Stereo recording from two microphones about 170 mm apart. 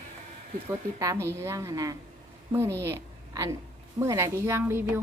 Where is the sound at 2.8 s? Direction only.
15° right (ahead or behind).